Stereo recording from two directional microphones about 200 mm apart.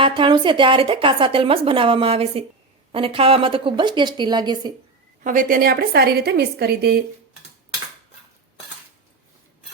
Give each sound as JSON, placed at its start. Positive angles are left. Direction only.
{"t": 0.0, "sound": "a woman's voice", "side_deg": -25}
{"t": 5.2, "sound": "a woman's voice", "side_deg": -40}